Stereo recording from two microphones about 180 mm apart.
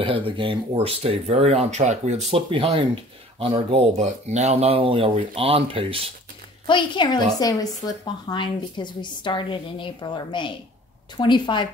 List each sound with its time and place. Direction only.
0.0 s speech: 30° right (ahead or behind)
6.7 s speech: 25° left (ahead or behind)